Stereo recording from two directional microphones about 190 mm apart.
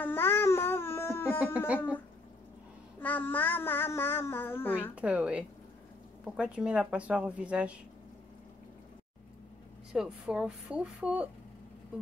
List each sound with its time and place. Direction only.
0.0 s babbling: 10° left (ahead or behind)
3.0 s child singing: 10° left (ahead or behind)
4.9 s a woman's voice: 5° right (ahead or behind)
9.9 s speech: 5° right (ahead or behind)